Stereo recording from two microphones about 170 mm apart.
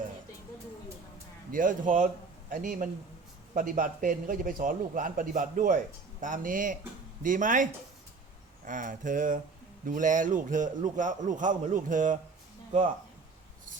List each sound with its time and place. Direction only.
1.5 s a man's voice: 50° right (ahead or behind)